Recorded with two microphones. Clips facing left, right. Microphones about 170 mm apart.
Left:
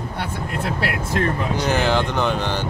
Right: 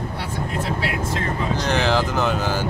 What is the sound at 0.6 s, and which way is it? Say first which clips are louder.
Speech: left 1 dB; 60° left (ahead or behind).